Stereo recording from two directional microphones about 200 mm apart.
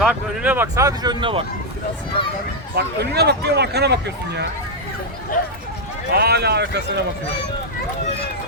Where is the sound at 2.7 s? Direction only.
55° right (ahead or behind).